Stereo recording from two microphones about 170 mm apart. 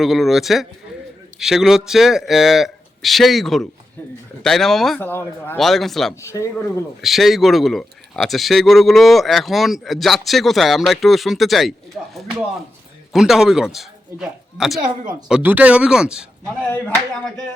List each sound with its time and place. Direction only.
0.0 s speech: centre (ahead or behind)
5.5 s speech: centre (ahead or behind)
6.2 s speech: 15° left (ahead or behind)
7.0 s speech: centre (ahead or behind)